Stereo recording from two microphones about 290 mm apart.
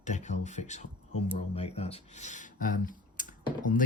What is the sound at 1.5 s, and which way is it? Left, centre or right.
Speech, left.